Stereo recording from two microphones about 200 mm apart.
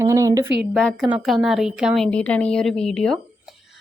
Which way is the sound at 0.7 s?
Centre (ahead or behind).